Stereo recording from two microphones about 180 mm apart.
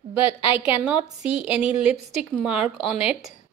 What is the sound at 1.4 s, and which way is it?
Speech, 5° right (ahead or behind).